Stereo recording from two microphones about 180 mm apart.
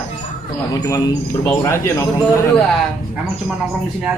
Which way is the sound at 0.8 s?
15° left (ahead or behind).